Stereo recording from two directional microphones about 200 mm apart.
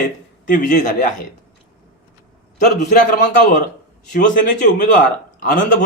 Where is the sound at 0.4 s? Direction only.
40° left (ahead or behind).